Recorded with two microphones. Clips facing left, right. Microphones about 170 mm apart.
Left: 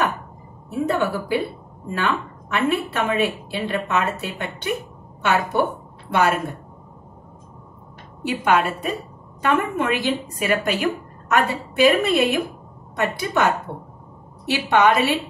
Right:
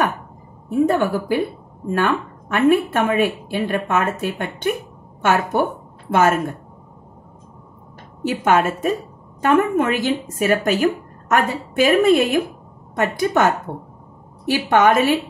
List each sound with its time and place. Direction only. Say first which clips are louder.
0.7 s speech: right 5 dB; 50° right (ahead or behind)
6.0 s a woman's voice: right 3 dB; 45° right (ahead or behind)
8.2 s speech: right 2 dB; 45° right (ahead or behind)